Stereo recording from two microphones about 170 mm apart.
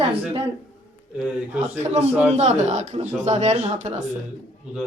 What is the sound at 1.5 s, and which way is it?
Speech, 40° right (ahead or behind).